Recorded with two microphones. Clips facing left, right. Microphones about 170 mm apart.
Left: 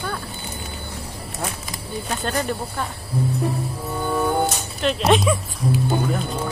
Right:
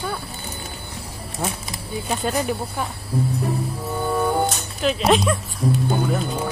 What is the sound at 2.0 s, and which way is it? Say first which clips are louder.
Speech: right 2 dB; 5° right (ahead or behind).